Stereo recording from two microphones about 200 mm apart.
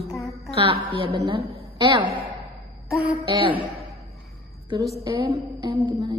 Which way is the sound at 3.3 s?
25° right (ahead or behind).